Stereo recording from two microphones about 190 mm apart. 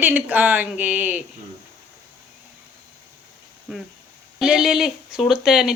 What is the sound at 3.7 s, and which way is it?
Speech, 5° right (ahead or behind).